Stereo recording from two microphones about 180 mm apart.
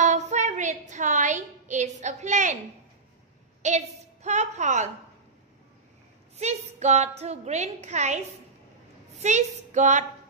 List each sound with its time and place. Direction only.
0.0 s a sound: 40° right (ahead or behind)
3.6 s a woman's voice: 40° right (ahead or behind)
6.3 s a woman's voice: 40° right (ahead or behind)
9.2 s a woman's voice: 40° right (ahead or behind)